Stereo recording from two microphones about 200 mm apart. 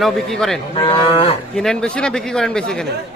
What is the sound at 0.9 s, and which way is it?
Cattle, 25° left (ahead or behind).